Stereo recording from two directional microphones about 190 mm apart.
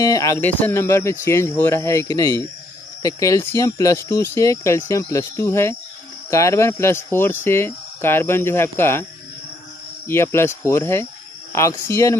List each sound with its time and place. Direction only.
0.0 s speech: 15° left (ahead or behind)
10.0 s speech: 15° left (ahead or behind)